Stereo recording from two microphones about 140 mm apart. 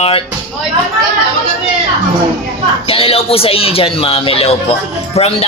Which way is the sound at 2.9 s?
40° left (ahead or behind).